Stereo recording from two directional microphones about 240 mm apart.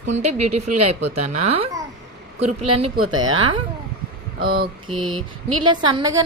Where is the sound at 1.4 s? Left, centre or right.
Right.